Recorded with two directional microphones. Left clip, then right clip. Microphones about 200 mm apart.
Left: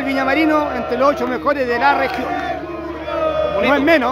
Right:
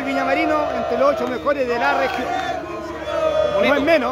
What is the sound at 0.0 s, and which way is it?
A man's voice, 15° left (ahead or behind).